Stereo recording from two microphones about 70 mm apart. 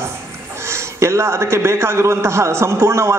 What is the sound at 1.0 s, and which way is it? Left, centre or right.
A man's voice, right.